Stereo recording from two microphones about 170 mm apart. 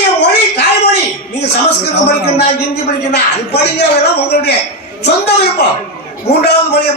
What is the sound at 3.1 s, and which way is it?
A man's voice, 80° left.